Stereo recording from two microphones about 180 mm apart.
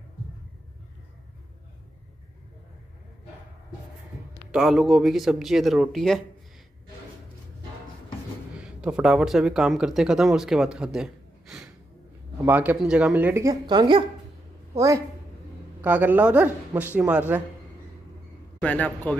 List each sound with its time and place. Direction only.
4.5 s speech: centre (ahead or behind)
8.5 s a woman's voice: 5° right (ahead or behind)
18.6 s a man's voice: 10° left (ahead or behind)